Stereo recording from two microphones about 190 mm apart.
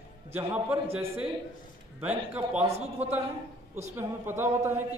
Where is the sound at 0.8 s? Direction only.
30° right (ahead or behind).